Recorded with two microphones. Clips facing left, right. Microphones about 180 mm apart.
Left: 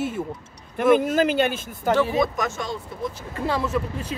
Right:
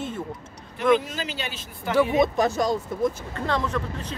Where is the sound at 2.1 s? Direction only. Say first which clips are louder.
Right 2 dB; 25° right (ahead or behind).